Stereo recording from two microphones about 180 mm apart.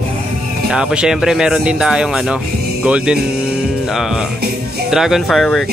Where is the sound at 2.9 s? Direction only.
5° right (ahead or behind).